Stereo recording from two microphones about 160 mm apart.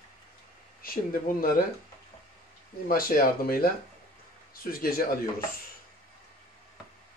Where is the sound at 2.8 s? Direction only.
65° left (ahead or behind).